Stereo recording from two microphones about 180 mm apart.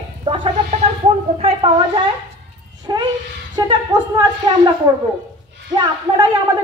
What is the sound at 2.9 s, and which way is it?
Speech, 20° right (ahead or behind).